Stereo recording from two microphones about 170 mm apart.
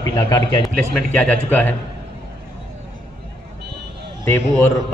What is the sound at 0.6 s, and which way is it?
Speech, 5° left (ahead or behind).